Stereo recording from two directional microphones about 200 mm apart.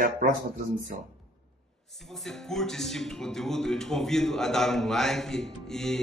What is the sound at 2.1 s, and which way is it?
Speech, centre (ahead or behind).